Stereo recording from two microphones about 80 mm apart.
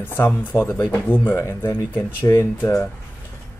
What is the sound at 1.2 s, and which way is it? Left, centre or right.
Speech, left.